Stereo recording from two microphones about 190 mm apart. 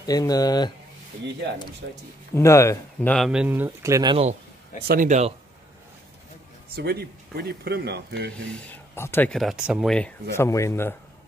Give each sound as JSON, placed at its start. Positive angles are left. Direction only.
{"t": 0.0, "sound": "speech", "side_deg": 20}
{"t": 1.8, "sound": "speech", "side_deg": -60}
{"t": 2.3, "sound": "speech", "side_deg": 15}
{"t": 3.3, "sound": "speech", "side_deg": -5}
{"t": 4.8, "sound": "speech", "side_deg": -45}
{"t": 6.7, "sound": "speech", "side_deg": -55}
{"t": 8.5, "sound": "speech", "side_deg": 10}
{"t": 9.3, "sound": "speech", "side_deg": 0}
{"t": 10.3, "sound": "speech", "side_deg": 15}